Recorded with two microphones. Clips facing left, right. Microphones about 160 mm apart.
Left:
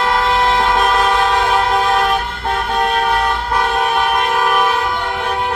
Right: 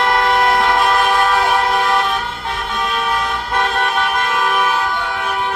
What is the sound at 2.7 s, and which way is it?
Vehicle, 55° left (ahead or behind).